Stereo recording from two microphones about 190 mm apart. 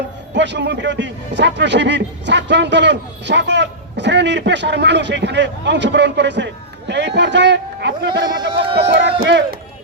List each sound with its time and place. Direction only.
0.3 s a man's voice: 70° right (ahead or behind)
8.4 s speech: 30° right (ahead or behind)